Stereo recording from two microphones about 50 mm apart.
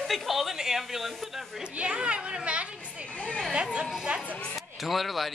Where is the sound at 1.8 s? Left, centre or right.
Right.